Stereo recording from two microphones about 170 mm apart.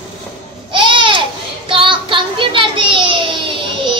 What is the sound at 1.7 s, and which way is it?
Child singing, 30° right (ahead or behind).